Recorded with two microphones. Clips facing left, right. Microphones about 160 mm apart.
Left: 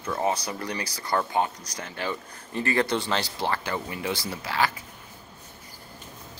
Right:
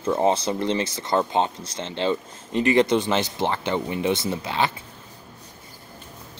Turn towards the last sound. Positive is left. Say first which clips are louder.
# right 3 dB
turn(degrees=-20)  # may be behind; listen again after turning